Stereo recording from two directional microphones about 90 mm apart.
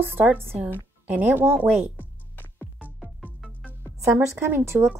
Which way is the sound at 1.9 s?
20° left (ahead or behind).